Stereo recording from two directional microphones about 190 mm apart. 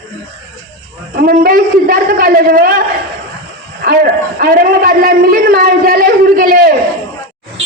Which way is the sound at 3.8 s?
55° right (ahead or behind).